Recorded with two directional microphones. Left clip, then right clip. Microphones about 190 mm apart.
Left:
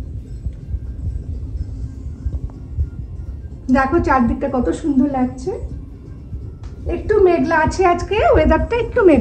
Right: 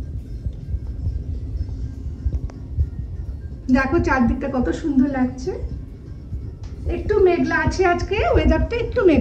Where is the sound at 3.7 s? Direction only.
35° right (ahead or behind).